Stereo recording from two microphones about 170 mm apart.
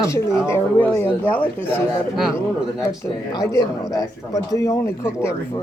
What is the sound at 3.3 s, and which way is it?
Speech, 20° left (ahead or behind).